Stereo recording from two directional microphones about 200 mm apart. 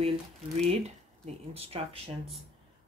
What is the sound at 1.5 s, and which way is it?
Speech, 30° right (ahead or behind).